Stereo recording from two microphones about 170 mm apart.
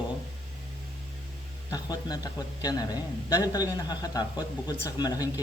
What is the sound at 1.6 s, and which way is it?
A man's voice, 20° left (ahead or behind).